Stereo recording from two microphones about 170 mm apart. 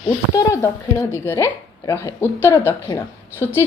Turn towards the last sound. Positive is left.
turn(degrees=15)  # may be behind; listen again after turning